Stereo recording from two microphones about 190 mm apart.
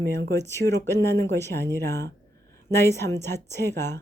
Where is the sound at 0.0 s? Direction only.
60° right (ahead or behind).